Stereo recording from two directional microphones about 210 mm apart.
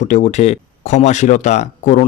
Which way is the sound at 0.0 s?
35° left (ahead or behind).